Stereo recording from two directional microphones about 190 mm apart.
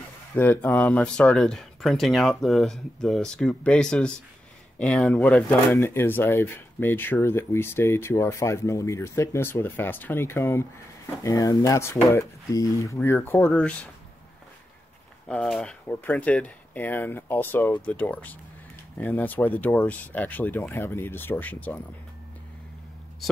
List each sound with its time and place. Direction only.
0.4 s speech: 10° left (ahead or behind)
15.2 s speech: 5° left (ahead or behind)